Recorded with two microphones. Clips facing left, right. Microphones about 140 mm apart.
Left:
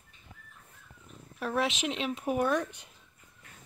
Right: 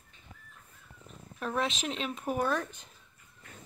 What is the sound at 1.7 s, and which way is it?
Speech, 40° right (ahead or behind).